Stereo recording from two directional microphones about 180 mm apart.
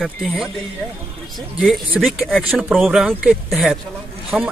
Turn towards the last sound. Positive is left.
turn(degrees=0)  # may be behind; listen again after turning